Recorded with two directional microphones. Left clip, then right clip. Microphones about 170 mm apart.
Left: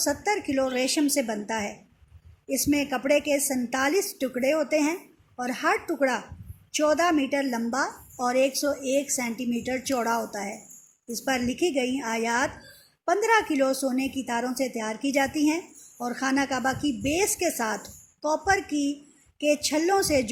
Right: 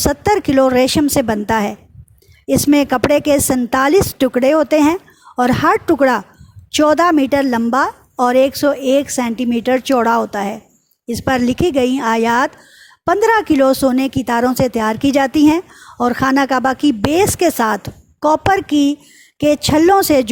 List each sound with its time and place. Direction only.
0.0 s a woman's voice: 60° right (ahead or behind)